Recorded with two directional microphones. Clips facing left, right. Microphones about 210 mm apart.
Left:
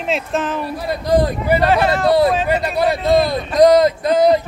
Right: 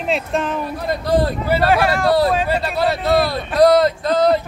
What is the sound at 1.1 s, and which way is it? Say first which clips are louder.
Speech: left 2 dB; 15° left (ahead or behind).